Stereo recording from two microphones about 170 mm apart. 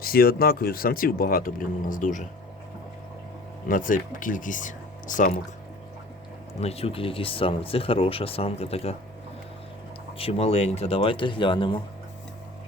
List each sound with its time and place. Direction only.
0.0 s speech: 60° left (ahead or behind)
3.7 s speech: 50° left (ahead or behind)
6.6 s speech: 35° left (ahead or behind)
10.2 s speech: 35° left (ahead or behind)